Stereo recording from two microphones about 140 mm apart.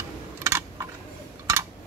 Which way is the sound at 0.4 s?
20° right (ahead or behind).